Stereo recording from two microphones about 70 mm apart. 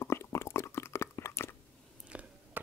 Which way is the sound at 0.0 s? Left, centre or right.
Left.